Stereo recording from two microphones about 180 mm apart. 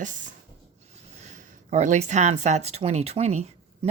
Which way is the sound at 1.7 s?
40° right (ahead or behind).